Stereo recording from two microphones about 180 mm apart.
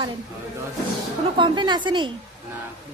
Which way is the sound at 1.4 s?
25° right (ahead or behind).